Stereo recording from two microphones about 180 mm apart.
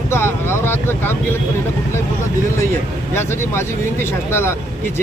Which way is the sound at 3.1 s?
15° left (ahead or behind).